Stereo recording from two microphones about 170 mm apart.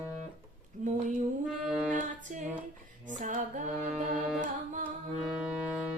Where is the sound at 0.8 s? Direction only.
45° right (ahead or behind).